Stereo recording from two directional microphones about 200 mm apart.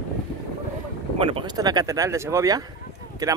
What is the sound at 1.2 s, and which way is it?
Speech, 25° right (ahead or behind).